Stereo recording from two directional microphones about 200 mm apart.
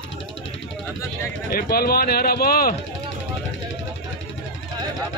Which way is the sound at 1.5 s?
50° left (ahead or behind).